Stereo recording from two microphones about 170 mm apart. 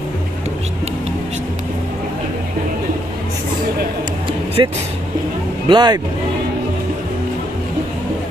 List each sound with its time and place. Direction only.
4.6 s speech: 30° right (ahead or behind)